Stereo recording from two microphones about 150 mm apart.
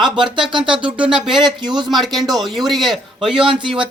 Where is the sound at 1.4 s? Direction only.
30° right (ahead or behind).